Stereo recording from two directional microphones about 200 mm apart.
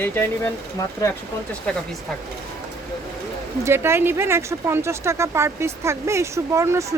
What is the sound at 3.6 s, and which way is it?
Speech, 10° right (ahead or behind).